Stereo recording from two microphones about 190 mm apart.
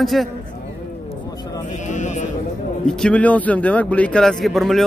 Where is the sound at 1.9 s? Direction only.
40° left (ahead or behind).